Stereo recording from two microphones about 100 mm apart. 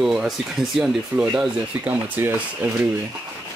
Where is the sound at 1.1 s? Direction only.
15° right (ahead or behind).